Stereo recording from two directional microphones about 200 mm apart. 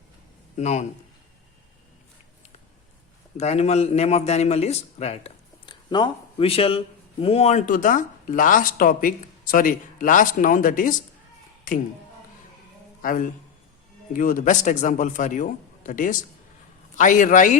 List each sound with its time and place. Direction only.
0.5 s a man's voice: 35° left (ahead or behind)
3.3 s a man's voice: 35° left (ahead or behind)
13.0 s a man's voice: 40° left (ahead or behind)